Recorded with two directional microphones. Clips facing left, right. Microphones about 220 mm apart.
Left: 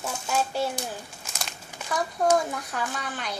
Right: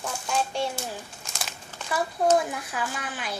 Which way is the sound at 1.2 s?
Centre (ahead or behind).